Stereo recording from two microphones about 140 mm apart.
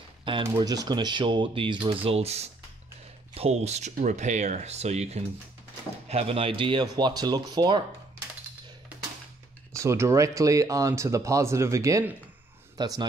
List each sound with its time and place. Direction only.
0.2 s speech: 35° right (ahead or behind)
9.7 s speech: 20° right (ahead or behind)